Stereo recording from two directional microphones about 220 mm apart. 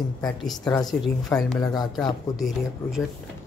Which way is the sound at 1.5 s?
15° left (ahead or behind).